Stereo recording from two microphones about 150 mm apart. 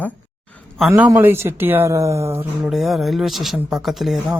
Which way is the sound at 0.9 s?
10° right (ahead or behind).